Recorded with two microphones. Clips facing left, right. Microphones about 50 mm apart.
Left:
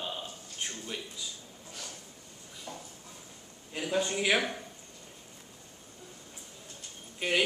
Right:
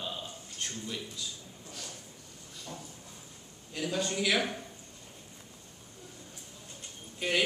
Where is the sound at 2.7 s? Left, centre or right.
Centre.